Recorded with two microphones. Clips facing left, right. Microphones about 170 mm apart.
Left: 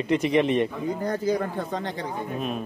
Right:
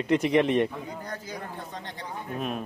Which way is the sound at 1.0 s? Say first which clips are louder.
Left 12 dB; 90° left.